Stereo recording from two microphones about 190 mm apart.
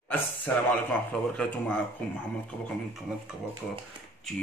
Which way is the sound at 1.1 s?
5° left (ahead or behind).